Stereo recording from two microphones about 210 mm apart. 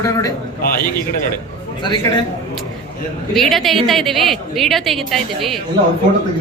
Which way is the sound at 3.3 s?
Centre (ahead or behind).